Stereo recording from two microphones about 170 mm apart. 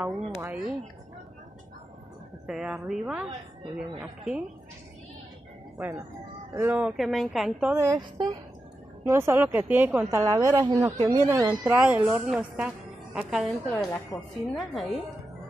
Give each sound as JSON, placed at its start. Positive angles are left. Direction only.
{"t": 0.0, "sound": "speech", "side_deg": -10}
{"t": 2.4, "sound": "a woman's voice", "side_deg": -5}
{"t": 5.8, "sound": "speech", "side_deg": -15}
{"t": 7.0, "sound": "a woman's voice", "side_deg": 0}
{"t": 7.7, "sound": "speech", "side_deg": -20}
{"t": 10.2, "sound": "a woman's voice", "side_deg": -25}
{"t": 13.7, "sound": "a woman's voice", "side_deg": 10}